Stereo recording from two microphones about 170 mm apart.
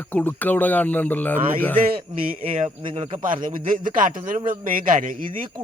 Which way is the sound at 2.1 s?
35° right (ahead or behind).